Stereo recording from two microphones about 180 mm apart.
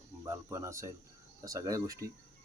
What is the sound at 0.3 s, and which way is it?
Speech, 15° right (ahead or behind).